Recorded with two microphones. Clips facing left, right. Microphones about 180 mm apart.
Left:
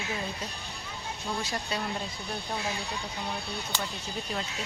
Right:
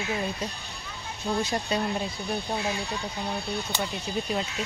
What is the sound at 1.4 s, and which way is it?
Speech, 20° right (ahead or behind).